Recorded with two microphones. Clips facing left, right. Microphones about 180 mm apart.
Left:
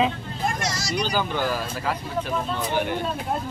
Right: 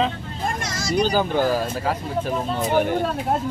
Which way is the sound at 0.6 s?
50° right (ahead or behind).